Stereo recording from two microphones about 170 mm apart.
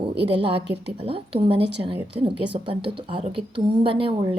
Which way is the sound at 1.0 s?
35° right (ahead or behind).